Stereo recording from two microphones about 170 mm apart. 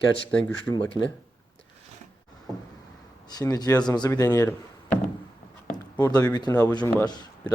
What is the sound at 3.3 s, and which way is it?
Speech, 25° left (ahead or behind).